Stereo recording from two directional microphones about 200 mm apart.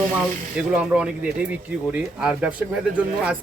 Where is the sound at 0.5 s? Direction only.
5° right (ahead or behind).